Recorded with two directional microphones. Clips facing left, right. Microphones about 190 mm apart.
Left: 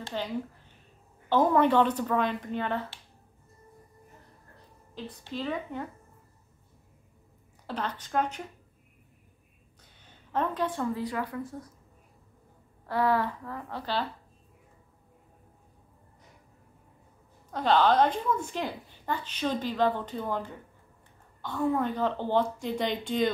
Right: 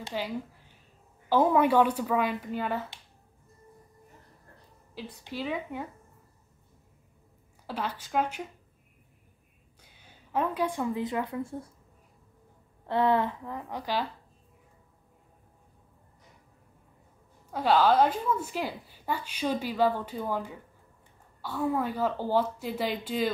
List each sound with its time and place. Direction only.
0.1 s a woman's voice: 10° right (ahead or behind)
1.3 s a woman's voice: 10° right (ahead or behind)
4.9 s a woman's voice: 10° right (ahead or behind)
7.6 s a woman's voice: 10° right (ahead or behind)
9.8 s a woman's voice: 10° right (ahead or behind); by 11.7 s 25° right (ahead or behind)
12.8 s a woman's voice: 25° right (ahead or behind)
17.5 s a woman's voice: 5° right (ahead or behind)